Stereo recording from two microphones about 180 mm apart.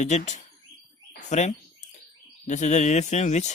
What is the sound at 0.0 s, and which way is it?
Speech, 40° left (ahead or behind).